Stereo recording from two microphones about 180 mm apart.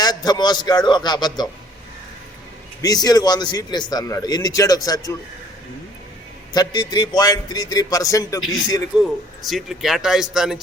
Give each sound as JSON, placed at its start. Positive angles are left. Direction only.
{"t": 0.0, "sound": "a man's voice", "side_deg": 20}
{"t": 2.8, "sound": "a man's voice", "side_deg": 20}
{"t": 6.5, "sound": "a man's voice", "side_deg": 20}
{"t": 9.5, "sound": "speech", "side_deg": 0}